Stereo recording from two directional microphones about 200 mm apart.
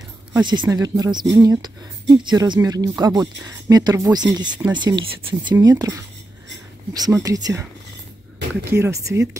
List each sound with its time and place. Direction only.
0.3 s speech: 20° right (ahead or behind)
7.2 s speech: 20° right (ahead or behind)
8.6 s speech: 10° right (ahead or behind)